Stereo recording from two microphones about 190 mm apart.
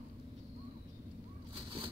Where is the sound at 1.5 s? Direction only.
25° right (ahead or behind).